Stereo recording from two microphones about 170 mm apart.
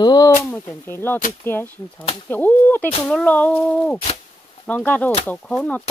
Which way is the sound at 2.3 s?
10° left (ahead or behind).